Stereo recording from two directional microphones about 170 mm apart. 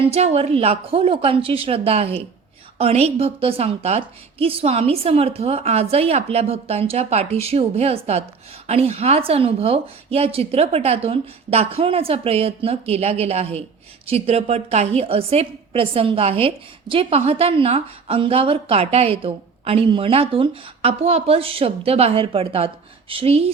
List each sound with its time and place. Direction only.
0.1 s a woman's voice: 40° right (ahead or behind)